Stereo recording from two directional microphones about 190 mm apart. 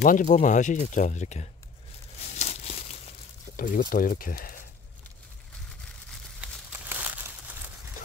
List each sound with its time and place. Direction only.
0.0 s speech: 45° left (ahead or behind)
2.3 s crumpling: 35° left (ahead or behind)
3.5 s speech: 45° left (ahead or behind)
6.4 s crumpling: 10° right (ahead or behind)